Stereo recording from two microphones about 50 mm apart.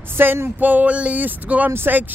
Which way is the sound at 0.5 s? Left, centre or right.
Right.